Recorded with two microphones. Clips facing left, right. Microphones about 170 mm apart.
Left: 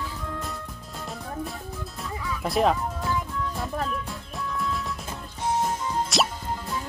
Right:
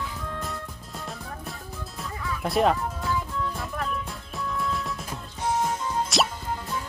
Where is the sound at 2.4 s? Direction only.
Centre (ahead or behind).